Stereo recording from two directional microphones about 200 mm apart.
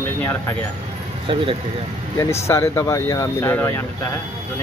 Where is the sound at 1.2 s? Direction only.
25° right (ahead or behind).